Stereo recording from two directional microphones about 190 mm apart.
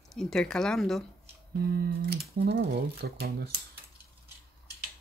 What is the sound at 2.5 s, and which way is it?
Speech, 60° right (ahead or behind).